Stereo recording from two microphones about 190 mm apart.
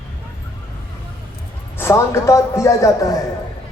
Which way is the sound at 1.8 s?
15° left (ahead or behind).